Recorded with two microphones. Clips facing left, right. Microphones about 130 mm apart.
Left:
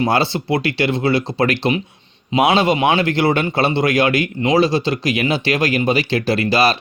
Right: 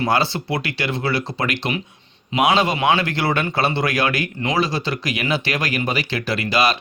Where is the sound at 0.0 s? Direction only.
25° left (ahead or behind).